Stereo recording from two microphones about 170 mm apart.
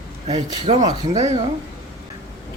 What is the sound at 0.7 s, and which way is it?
Speech, 45° right (ahead or behind).